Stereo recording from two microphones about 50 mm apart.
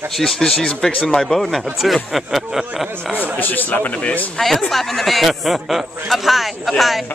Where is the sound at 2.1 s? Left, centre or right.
Centre.